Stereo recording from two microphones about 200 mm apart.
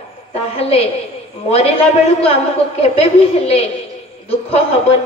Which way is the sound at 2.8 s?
30° left (ahead or behind).